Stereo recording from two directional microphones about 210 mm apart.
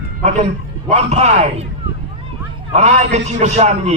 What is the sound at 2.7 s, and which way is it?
A man's voice, 30° right (ahead or behind).